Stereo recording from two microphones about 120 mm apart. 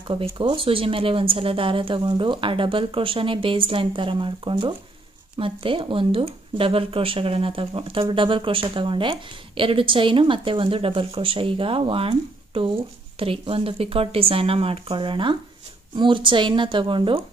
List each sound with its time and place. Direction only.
0.1 s speech: 45° right (ahead or behind)